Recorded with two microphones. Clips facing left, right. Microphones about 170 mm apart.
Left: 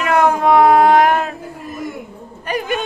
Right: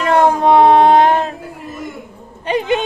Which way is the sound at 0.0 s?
30° right (ahead or behind).